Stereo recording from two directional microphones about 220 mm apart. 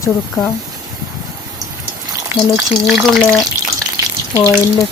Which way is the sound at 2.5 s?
Centre (ahead or behind).